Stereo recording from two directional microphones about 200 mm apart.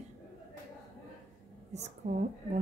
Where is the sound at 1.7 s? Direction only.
35° right (ahead or behind).